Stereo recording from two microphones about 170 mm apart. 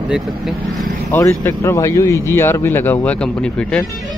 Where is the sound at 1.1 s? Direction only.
15° left (ahead or behind).